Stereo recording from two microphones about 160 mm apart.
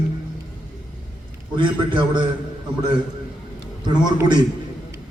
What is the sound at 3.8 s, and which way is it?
Speech, 25° right (ahead or behind).